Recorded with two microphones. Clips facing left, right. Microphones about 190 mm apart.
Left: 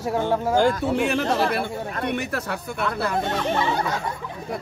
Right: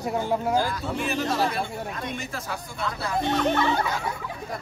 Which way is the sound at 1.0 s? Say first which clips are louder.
Left 4 dB; 70° left (ahead or behind).